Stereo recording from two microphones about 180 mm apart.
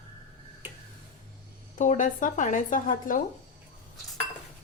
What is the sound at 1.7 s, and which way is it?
Speech, 45° left (ahead or behind).